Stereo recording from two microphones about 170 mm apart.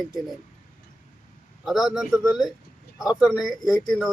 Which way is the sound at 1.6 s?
Centre (ahead or behind).